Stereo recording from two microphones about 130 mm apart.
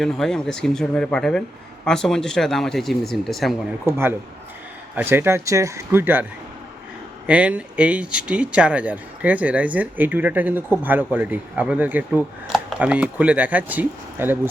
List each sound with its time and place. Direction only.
0.0 s a man's voice: 5° left (ahead or behind)
3.8 s speech: 20° right (ahead or behind)
7.3 s speech: 10° right (ahead or behind)